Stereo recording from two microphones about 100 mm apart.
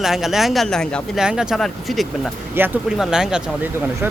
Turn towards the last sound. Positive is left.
turn(degrees=-5)  # may be behind; listen again after turning